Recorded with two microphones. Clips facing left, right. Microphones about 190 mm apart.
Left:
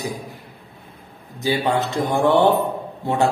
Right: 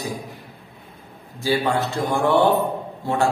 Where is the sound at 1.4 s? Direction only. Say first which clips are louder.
Left 1 dB; 20° left (ahead or behind).